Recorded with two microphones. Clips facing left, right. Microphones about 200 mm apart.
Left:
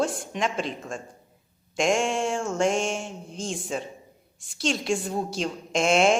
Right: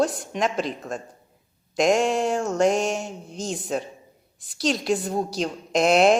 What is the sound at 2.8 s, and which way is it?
Speech, centre (ahead or behind).